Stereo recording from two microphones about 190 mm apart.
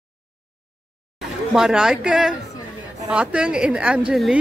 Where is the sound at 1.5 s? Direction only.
5° right (ahead or behind).